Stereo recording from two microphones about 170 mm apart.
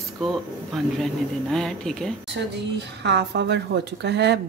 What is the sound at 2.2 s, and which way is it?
A woman's voice, 90° right.